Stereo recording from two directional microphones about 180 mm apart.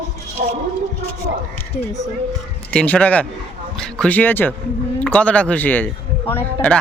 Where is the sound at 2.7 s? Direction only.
5° left (ahead or behind).